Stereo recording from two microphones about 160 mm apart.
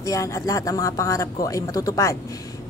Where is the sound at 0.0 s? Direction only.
20° left (ahead or behind).